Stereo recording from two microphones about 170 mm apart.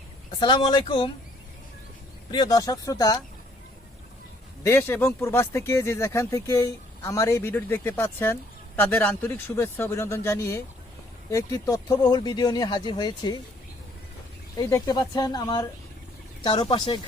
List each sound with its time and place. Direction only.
0.3 s speech: 30° left (ahead or behind)
2.3 s speech: 20° left (ahead or behind)
4.6 s speech: 15° left (ahead or behind)
14.5 s speech: 20° left (ahead or behind)